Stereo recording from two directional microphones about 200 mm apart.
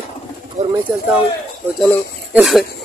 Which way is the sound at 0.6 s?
35° right (ahead or behind).